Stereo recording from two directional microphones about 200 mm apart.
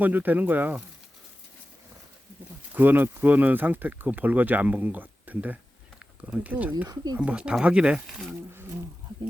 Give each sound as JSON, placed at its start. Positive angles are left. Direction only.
{"t": 0.0, "sound": "speech", "side_deg": -10}
{"t": 2.7, "sound": "speech", "side_deg": -10}
{"t": 6.8, "sound": "speech", "side_deg": -20}
{"t": 7.2, "sound": "speech", "side_deg": -5}